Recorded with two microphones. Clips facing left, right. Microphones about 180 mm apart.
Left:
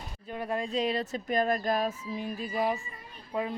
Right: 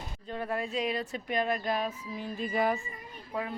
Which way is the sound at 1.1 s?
45° left (ahead or behind).